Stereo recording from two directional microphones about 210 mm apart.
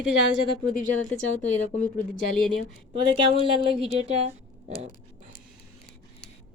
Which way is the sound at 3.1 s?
25° right (ahead or behind).